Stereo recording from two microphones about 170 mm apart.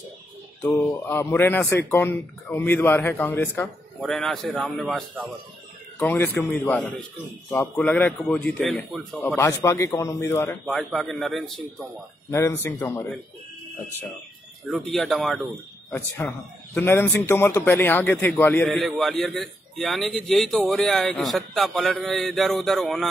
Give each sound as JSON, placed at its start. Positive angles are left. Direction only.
{"t": 0.6, "sound": "a man's voice", "side_deg": 15}
{"t": 10.6, "sound": "a man's voice", "side_deg": 0}
{"t": 12.3, "sound": "speech", "side_deg": 15}
{"t": 14.7, "sound": "a man's voice", "side_deg": 0}